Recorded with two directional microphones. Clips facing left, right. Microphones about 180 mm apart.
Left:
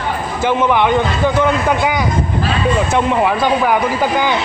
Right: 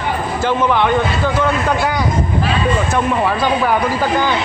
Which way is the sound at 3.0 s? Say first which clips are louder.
Left 2 dB; 15° left (ahead or behind).